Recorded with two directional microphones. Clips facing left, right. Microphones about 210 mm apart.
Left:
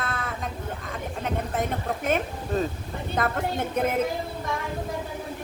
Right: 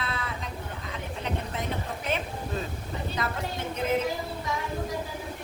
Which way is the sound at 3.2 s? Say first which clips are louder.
Left 8 dB; 55° left (ahead or behind).